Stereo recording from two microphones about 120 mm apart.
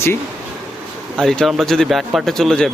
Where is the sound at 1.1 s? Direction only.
5° left (ahead or behind).